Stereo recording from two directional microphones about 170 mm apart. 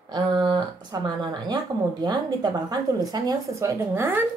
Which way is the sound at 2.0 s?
25° right (ahead or behind).